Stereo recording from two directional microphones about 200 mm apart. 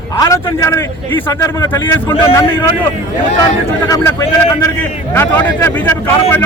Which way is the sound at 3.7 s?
15° left (ahead or behind).